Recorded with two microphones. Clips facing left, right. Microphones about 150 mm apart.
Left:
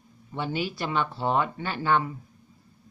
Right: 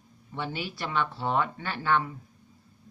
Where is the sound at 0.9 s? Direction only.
30° left (ahead or behind).